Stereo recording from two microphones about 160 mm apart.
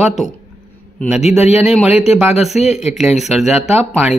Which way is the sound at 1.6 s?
5° right (ahead or behind).